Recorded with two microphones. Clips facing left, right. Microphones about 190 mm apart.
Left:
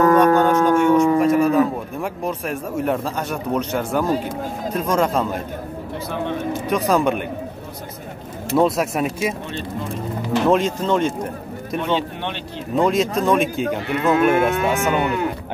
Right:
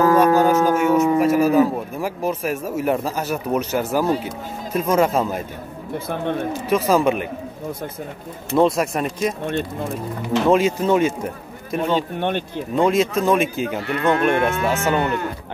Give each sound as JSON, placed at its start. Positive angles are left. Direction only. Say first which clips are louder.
{"t": 0.1, "sound": "speech", "louder": "even", "side_deg": -5}
{"t": 6.7, "sound": "speech", "louder": "right 1 dB", "side_deg": 0}
{"t": 8.5, "sound": "speech", "louder": "even", "side_deg": 0}
{"t": 10.4, "sound": "speech", "louder": "right 2 dB", "side_deg": -5}
{"t": 12.2, "sound": "speech", "louder": "right 6 dB", "side_deg": -50}
{"t": 12.7, "sound": "speech", "louder": "even", "side_deg": 0}
{"t": 14.5, "sound": "speech", "louder": "left 2 dB", "side_deg": 15}